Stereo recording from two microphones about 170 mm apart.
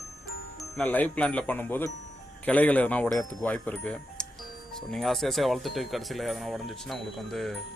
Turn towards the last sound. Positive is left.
turn(degrees=0)  # may be behind; listen again after turning